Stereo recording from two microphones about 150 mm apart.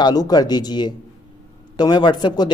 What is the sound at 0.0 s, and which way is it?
Speech, 25° left (ahead or behind).